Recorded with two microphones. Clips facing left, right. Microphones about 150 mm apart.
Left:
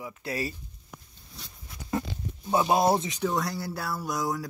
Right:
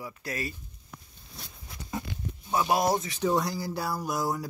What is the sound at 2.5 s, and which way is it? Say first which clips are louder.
Speech: left 3 dB; 25° left (ahead or behind).